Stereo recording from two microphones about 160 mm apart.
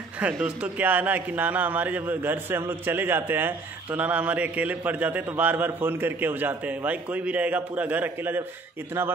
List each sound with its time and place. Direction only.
0.2 s a man's voice: 5° right (ahead or behind)